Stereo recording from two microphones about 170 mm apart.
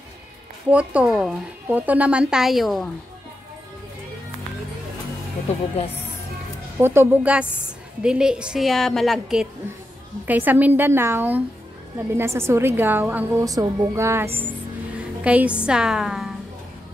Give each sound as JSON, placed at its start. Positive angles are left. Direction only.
{"t": 0.7, "sound": "a woman's voice", "side_deg": -5}
{"t": 6.8, "sound": "a woman's voice", "side_deg": -15}